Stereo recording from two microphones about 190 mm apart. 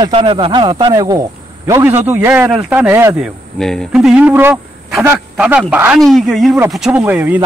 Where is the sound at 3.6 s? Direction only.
Centre (ahead or behind).